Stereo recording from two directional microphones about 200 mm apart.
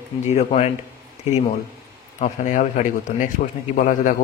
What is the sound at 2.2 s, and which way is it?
A man's voice, 40° left (ahead or behind).